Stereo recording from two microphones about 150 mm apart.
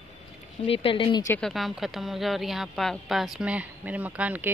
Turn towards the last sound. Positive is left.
turn(degrees=-10)  # may be behind; listen again after turning